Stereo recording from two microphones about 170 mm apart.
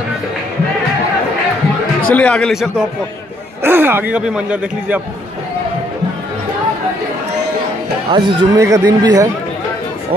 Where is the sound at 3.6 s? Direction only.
10° right (ahead or behind).